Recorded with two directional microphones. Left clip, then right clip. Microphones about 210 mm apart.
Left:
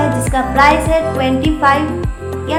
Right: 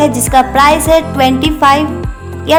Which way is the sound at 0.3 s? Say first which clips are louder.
Right 4 dB; 45° right (ahead or behind).